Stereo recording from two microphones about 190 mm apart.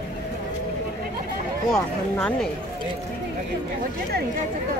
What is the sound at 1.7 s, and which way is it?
Speech, 15° left (ahead or behind).